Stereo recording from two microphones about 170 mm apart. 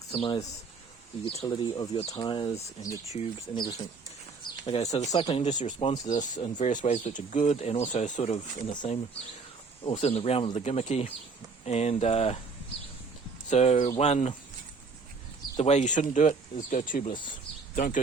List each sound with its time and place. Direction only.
0.1 s speech: 35° left (ahead or behind)
4.9 s speech: 20° left (ahead or behind)
5.1 s speech: 30° left (ahead or behind)
9.8 s speech: 35° left (ahead or behind)
13.5 s speech: 40° left (ahead or behind)
15.5 s speech: 40° left (ahead or behind)